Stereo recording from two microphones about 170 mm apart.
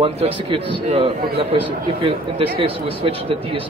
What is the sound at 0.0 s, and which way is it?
Speech, 35° right (ahead or behind).